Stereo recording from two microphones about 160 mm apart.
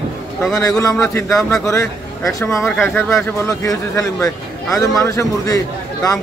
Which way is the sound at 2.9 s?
15° left (ahead or behind).